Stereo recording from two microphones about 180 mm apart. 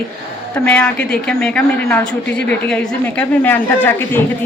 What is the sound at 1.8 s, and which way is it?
A woman's voice, 15° left (ahead or behind).